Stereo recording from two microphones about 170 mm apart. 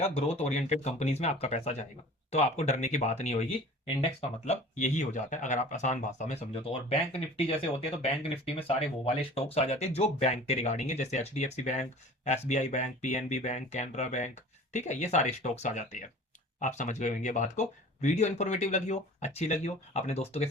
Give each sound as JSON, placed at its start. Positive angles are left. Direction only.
{"t": 0.0, "sound": "speech", "side_deg": 40}